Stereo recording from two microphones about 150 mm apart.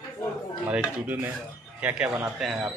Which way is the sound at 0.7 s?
10° right (ahead or behind).